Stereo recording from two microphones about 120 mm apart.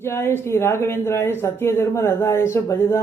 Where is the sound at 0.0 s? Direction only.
20° left (ahead or behind).